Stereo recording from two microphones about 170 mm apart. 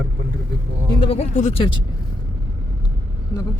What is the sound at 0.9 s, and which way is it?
Speech, 35° left (ahead or behind).